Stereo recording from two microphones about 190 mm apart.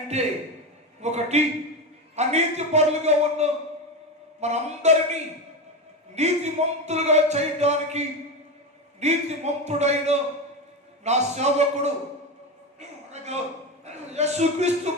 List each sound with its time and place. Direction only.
0.1 s speech: 35° right (ahead or behind)
12.8 s a sound: 35° right (ahead or behind)
13.8 s a man's voice: 35° right (ahead or behind)
14.9 s music: 35° right (ahead or behind)